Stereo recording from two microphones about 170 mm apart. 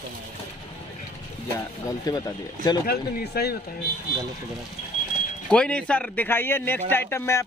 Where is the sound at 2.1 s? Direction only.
20° left (ahead or behind).